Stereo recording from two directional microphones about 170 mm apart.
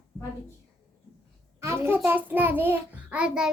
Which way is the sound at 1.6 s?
15° right (ahead or behind).